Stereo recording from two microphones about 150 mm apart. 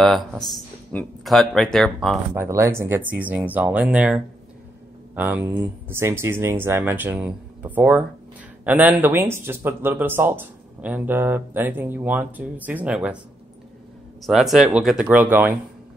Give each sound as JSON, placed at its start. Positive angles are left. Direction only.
{"t": 0.0, "sound": "speech", "side_deg": 0}
{"t": 2.3, "sound": "speech", "side_deg": -15}
{"t": 14.2, "sound": "speech", "side_deg": 0}